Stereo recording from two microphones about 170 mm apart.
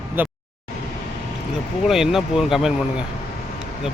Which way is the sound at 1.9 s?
Centre (ahead or behind).